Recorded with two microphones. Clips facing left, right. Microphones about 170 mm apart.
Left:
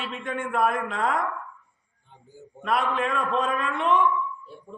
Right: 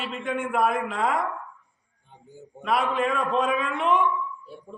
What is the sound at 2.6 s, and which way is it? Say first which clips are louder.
A man's voice: right 1 dB; 5° right (ahead or behind).